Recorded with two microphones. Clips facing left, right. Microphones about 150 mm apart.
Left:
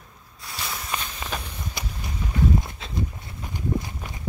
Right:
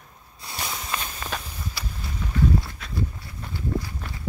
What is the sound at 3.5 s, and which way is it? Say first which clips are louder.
Walk: left 1 dB; 20° left (ahead or behind).